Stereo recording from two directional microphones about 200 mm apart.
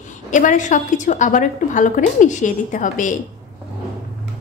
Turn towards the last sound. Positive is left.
turn(degrees=40)  # may be behind; listen again after turning